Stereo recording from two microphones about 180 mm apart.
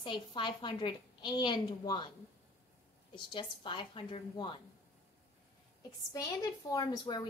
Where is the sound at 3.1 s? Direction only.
25° left (ahead or behind).